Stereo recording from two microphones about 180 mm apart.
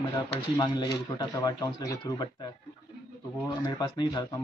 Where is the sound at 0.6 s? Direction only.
20° left (ahead or behind).